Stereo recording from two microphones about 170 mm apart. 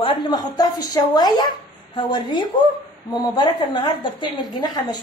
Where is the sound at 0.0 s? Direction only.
25° left (ahead or behind).